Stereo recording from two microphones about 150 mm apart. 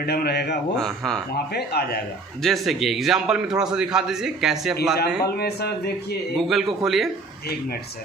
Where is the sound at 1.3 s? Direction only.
90° left.